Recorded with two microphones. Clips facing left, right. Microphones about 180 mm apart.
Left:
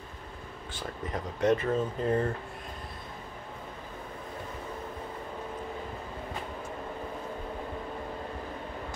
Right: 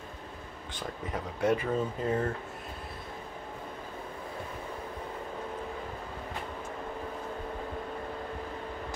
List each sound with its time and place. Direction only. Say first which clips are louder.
0.7 s speech: even; 10° right (ahead or behind)